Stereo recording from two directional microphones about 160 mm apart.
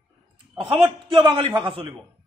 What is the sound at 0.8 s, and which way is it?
A man's voice, 30° right (ahead or behind).